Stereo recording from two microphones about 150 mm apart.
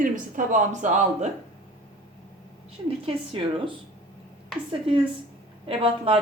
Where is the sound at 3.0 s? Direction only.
35° right (ahead or behind).